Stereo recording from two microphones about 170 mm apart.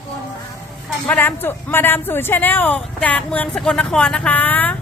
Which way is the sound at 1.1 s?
10° left (ahead or behind).